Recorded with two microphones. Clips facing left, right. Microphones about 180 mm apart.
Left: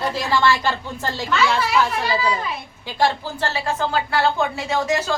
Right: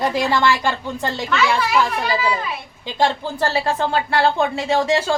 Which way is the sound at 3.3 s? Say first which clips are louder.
Right 4 dB; 35° right (ahead or behind).